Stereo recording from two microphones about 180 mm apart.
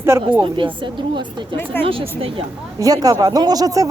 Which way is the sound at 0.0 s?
15° right (ahead or behind).